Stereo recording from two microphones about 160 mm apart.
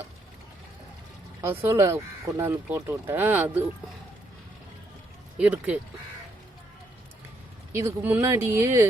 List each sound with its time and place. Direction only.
1.4 s speech: 15° right (ahead or behind)
5.4 s speech: 10° right (ahead or behind)
7.7 s speech: 15° right (ahead or behind)